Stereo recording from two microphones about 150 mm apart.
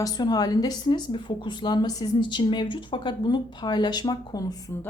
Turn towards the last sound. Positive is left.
turn(degrees=25)  # may be behind; listen again after turning